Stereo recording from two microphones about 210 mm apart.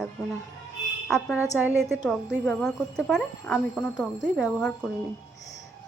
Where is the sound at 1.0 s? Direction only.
Centre (ahead or behind).